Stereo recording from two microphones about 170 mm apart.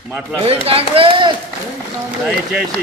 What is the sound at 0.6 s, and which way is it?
Speech, 35° right (ahead or behind).